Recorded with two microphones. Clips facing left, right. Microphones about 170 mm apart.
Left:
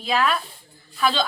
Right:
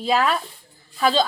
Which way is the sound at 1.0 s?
40° right (ahead or behind).